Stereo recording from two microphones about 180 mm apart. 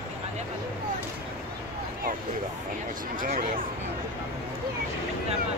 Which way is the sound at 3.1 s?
50° right (ahead or behind).